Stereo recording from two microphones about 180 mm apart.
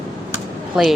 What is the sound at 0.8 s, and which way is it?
Speech, centre (ahead or behind).